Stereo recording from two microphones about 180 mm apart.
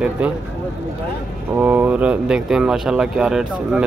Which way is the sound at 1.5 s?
10° right (ahead or behind).